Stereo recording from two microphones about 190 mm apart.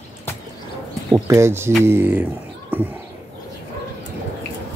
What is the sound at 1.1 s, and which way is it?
Speech, 15° right (ahead or behind).